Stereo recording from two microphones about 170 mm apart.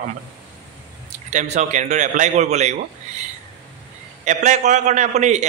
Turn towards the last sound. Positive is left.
turn(degrees=-40)  # may be behind; listen again after turning